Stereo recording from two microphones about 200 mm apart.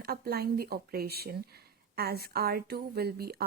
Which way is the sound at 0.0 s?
50° right (ahead or behind).